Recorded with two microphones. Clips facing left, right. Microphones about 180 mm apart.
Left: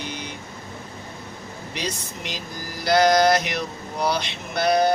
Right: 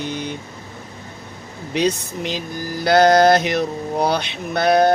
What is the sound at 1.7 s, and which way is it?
Mantra, 60° right (ahead or behind).